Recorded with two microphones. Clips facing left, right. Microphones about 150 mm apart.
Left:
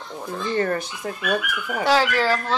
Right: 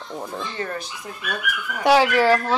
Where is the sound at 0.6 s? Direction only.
55° left (ahead or behind).